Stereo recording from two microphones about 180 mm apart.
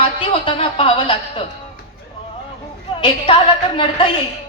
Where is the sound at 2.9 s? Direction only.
30° left (ahead or behind).